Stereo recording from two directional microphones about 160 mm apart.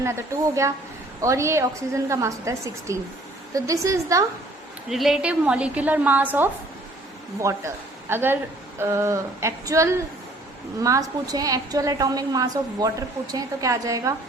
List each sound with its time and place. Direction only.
0.0 s a woman's voice: 20° right (ahead or behind)
4.9 s a woman's voice: centre (ahead or behind); by 14.2 s 20° right (ahead or behind)